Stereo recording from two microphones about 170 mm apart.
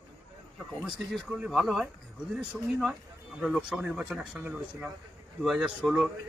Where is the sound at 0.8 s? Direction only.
5° right (ahead or behind).